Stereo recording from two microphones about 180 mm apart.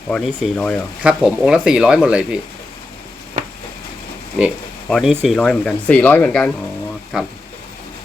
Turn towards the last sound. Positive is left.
turn(degrees=-5)  # may be behind; listen again after turning